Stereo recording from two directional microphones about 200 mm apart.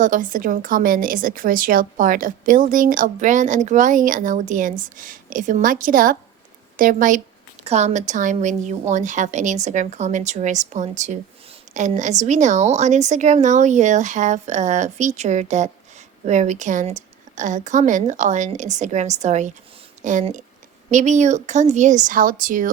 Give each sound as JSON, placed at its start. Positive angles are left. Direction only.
{"t": 0.0, "sound": "speech", "side_deg": -40}